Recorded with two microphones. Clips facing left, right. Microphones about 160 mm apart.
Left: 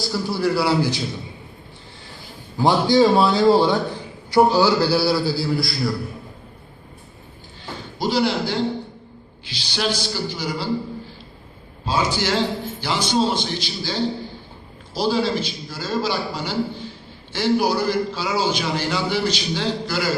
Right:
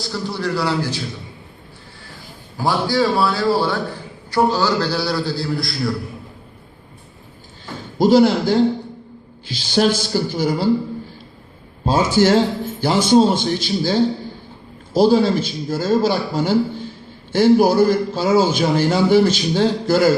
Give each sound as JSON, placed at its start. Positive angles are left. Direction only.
{"t": 0.0, "sound": "a man's voice", "side_deg": 5}
{"t": 2.6, "sound": "a man's voice", "side_deg": 20}
{"t": 7.9, "sound": "a man's voice", "side_deg": -45}
{"t": 11.9, "sound": "a man's voice", "side_deg": -50}